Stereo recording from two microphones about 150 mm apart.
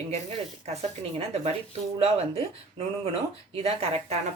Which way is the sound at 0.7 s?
45° right (ahead or behind).